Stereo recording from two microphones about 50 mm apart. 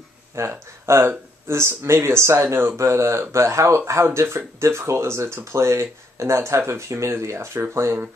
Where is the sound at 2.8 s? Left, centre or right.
Right.